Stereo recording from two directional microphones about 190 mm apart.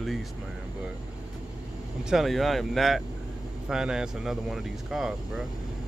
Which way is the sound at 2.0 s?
Centre (ahead or behind).